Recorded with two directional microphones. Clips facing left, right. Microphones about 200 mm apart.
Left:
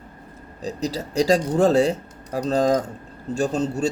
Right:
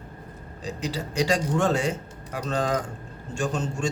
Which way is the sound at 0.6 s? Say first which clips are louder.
Left 4 dB; 40° left (ahead or behind).